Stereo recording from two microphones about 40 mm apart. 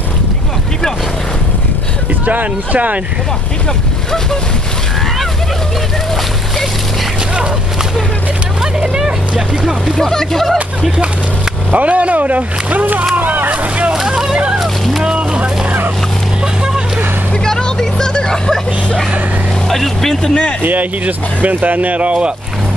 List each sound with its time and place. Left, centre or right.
2.2 s speech: right
8.8 s speech: right
9.9 s speech: centre
11.7 s speech: right
13.9 s speech: centre
15.1 s vehicle: right
17.5 s vehicle: centre
19.7 s speech: centre
20.6 s speech: right